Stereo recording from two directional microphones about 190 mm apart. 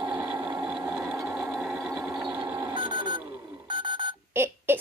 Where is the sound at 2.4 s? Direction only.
10° right (ahead or behind).